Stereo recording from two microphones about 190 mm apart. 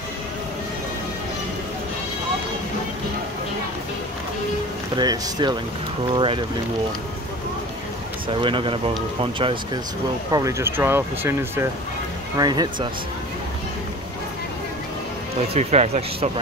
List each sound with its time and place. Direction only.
4.9 s speech: 20° right (ahead or behind)
8.3 s speech: 25° right (ahead or behind)
10.3 s speech: 15° right (ahead or behind)
15.5 s speech: 35° right (ahead or behind)